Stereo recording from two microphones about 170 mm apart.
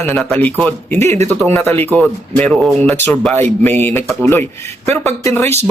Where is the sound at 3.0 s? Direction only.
10° left (ahead or behind).